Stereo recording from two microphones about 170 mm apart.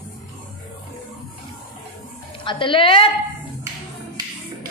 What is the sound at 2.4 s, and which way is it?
Speech, 30° left (ahead or behind).